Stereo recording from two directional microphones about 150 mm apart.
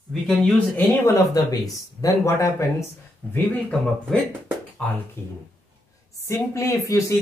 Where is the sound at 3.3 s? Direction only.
5° left (ahead or behind).